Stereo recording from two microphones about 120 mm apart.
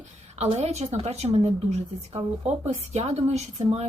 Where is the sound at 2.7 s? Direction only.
70° right (ahead or behind).